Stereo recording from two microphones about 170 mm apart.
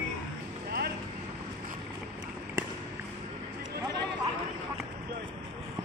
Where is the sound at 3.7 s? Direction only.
80° right.